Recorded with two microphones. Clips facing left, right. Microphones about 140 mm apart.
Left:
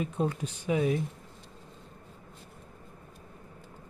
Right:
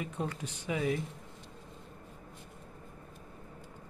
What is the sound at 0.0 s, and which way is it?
Speech, 25° left (ahead or behind).